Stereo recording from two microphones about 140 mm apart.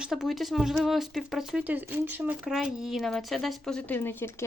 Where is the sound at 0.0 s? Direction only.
5° right (ahead or behind).